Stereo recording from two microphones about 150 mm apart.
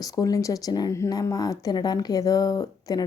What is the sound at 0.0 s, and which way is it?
A woman's voice, 25° left (ahead or behind).